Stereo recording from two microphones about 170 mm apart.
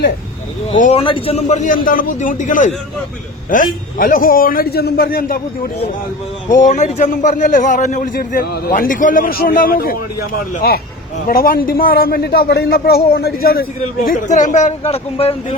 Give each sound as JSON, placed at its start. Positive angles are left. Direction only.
{"t": 0.9, "sound": "a man's voice", "side_deg": 30}
{"t": 6.5, "sound": "a man's voice", "side_deg": 45}